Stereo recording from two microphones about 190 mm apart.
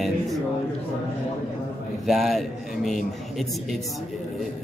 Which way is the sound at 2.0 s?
Centre (ahead or behind).